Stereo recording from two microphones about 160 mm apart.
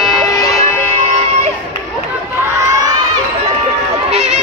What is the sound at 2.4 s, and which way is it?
Crowd, 25° right (ahead or behind).